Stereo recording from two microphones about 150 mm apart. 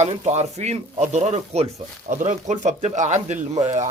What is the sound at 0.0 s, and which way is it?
Speech, 50° right (ahead or behind).